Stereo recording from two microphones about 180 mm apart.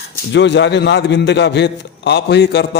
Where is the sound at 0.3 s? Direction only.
80° left.